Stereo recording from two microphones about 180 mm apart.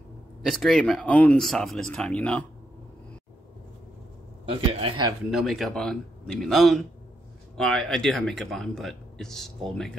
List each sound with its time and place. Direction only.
0.4 s speech: centre (ahead or behind)
4.5 s a man's voice: 30° right (ahead or behind)
5.3 s speech: centre (ahead or behind)